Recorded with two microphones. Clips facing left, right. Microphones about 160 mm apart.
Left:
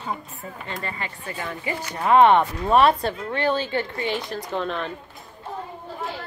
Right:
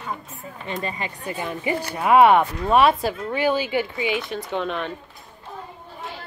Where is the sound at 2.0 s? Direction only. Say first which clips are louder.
Right 1 dB; 10° right (ahead or behind).